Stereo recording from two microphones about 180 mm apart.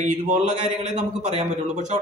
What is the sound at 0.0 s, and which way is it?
A man's voice, 40° right (ahead or behind).